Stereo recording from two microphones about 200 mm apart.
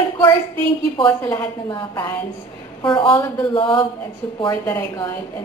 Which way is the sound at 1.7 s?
20° left (ahead or behind).